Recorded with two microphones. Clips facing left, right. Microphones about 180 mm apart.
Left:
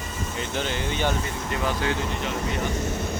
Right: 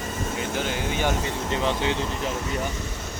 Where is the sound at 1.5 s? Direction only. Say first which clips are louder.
Right 1 dB; 25° right (ahead or behind).